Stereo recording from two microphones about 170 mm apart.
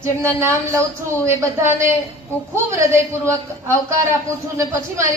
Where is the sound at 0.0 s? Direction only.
15° right (ahead or behind).